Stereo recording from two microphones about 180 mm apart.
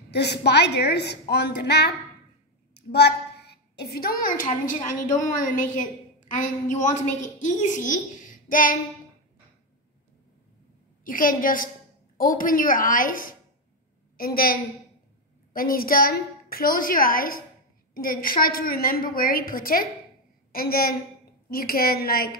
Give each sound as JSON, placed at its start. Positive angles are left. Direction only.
{"t": 0.1, "sound": "a woman's voice", "side_deg": 70}
{"t": 11.1, "sound": "a woman's voice", "side_deg": 50}